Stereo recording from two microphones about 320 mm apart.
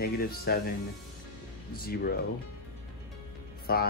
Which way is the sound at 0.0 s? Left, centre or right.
Left.